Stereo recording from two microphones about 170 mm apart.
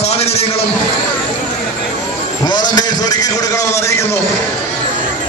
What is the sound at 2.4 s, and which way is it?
A man's voice, 25° left (ahead or behind).